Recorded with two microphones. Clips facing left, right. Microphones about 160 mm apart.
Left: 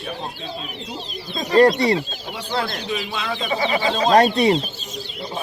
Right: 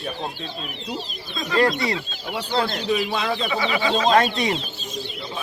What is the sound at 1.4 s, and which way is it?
Speech, 40° left (ahead or behind).